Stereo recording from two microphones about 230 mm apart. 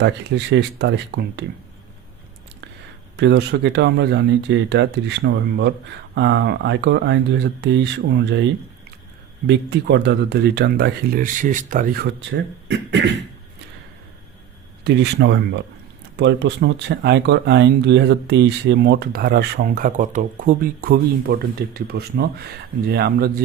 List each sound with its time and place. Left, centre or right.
0.0 s speech: right
3.2 s speech: right
9.5 s speech: right
14.8 s speech: right